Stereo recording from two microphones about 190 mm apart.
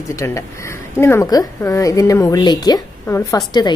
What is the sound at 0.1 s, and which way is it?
A woman's voice, 15° left (ahead or behind).